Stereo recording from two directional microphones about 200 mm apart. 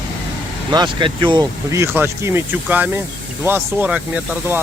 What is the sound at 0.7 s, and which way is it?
Speech, 20° right (ahead or behind).